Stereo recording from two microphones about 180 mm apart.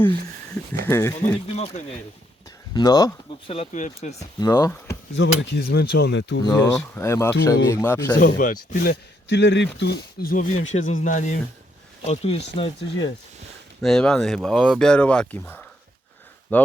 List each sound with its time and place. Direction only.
0.9 s speech: 15° left (ahead or behind)
1.5 s speech: 35° left (ahead or behind)
2.7 s speech: 20° left (ahead or behind)
3.5 s speech: 40° left (ahead or behind)
4.2 s speech: 20° left (ahead or behind)
5.1 s speech: 75° left (ahead or behind)
6.4 s speech: 15° left (ahead or behind)
8.2 s speech: 50° left (ahead or behind); by 13.1 s 30° left (ahead or behind)
13.8 s speech: 5° left (ahead or behind)